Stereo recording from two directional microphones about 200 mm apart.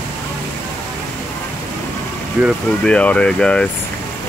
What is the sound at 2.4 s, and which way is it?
Speech, 5° left (ahead or behind).